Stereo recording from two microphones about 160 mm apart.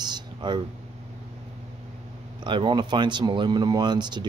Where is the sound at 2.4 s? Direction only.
30° right (ahead or behind).